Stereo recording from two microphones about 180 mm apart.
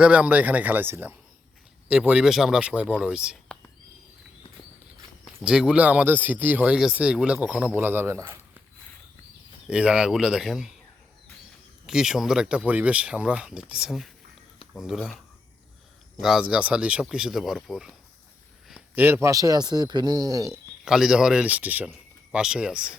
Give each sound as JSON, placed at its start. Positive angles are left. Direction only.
{"t": 0.0, "sound": "speech", "side_deg": -5}
{"t": 5.2, "sound": "speech", "side_deg": -5}
{"t": 9.6, "sound": "speech", "side_deg": -5}
{"t": 11.9, "sound": "speech", "side_deg": -5}
{"t": 16.2, "sound": "a man's voice", "side_deg": -5}
{"t": 20.8, "sound": "speech", "side_deg": -5}